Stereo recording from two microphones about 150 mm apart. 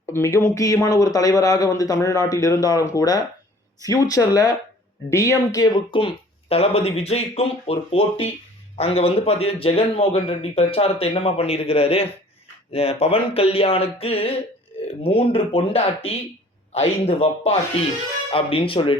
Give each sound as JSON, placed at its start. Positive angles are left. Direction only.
{"t": 0.0, "sound": "a sound", "side_deg": 15}
{"t": 0.3, "sound": "a man's voice", "side_deg": 20}
{"t": 6.5, "sound": "speech", "side_deg": 40}